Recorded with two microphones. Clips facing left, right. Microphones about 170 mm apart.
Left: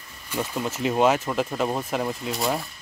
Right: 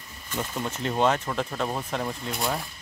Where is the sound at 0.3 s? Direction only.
5° left (ahead or behind).